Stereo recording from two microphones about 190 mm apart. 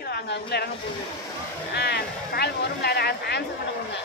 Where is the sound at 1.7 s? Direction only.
60° left (ahead or behind).